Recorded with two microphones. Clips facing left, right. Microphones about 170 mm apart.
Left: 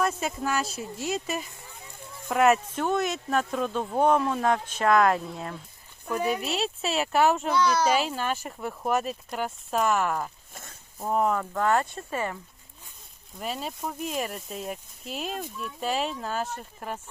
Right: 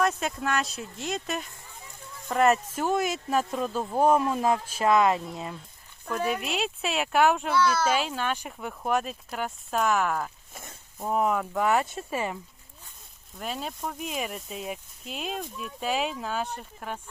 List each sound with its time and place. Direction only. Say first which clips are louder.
0.0 s speech: right 1 dB; 5° left (ahead or behind)
7.5 s speech: left 1 dB; 15° left (ahead or behind)
7.9 s speech: left 1 dB; 5° left (ahead or behind); by 12.4 s 15° right (ahead or behind)
13.4 s speech: left 1 dB; centre (ahead or behind)